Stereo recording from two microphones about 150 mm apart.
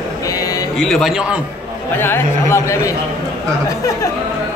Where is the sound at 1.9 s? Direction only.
15° left (ahead or behind).